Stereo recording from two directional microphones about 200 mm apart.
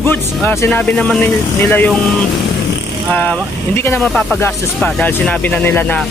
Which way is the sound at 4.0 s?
Centre (ahead or behind).